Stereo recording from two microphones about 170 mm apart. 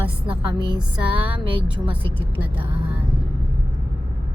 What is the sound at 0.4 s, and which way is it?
Speech, 25° right (ahead or behind).